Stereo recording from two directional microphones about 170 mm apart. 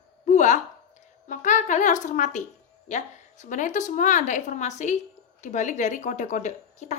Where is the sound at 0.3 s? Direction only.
45° left (ahead or behind).